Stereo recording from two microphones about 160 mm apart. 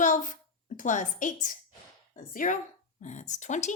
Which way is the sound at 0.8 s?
50° left (ahead or behind).